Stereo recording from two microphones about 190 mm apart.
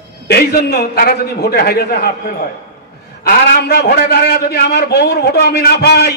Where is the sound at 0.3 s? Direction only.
55° left (ahead or behind).